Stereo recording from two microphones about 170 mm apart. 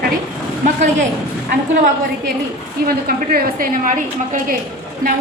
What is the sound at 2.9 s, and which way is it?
A woman's voice, 60° right (ahead or behind).